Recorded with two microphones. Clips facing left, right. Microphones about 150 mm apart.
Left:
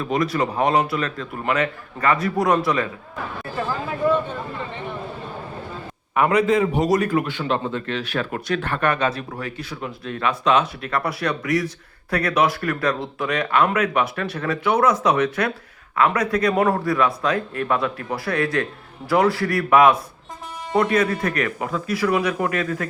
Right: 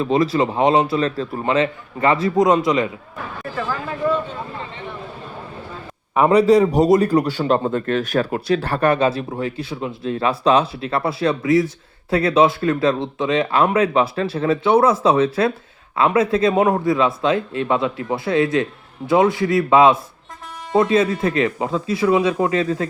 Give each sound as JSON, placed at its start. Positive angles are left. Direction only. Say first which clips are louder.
{"t": 0.0, "sound": "speech", "louder": "right 4 dB", "side_deg": -25}
{"t": 6.1, "sound": "speech", "louder": "right 5 dB", "side_deg": -30}
{"t": 6.8, "sound": "speech", "louder": "right 5 dB", "side_deg": -30}
{"t": 8.3, "sound": "speech", "louder": "right 5 dB", "side_deg": -30}